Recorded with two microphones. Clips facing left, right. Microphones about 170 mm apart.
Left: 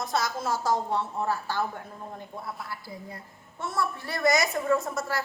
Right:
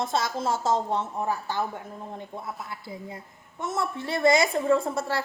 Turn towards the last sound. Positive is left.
turn(degrees=-30)  # may be behind; listen again after turning